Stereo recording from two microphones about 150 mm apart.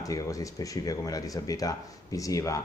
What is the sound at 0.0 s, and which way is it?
Speech, 20° left (ahead or behind).